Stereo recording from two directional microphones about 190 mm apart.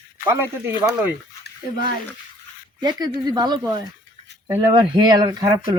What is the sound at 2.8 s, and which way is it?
Speech, 20° right (ahead or behind).